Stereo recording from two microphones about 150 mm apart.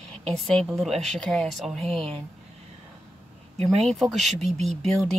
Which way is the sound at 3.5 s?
45° right (ahead or behind).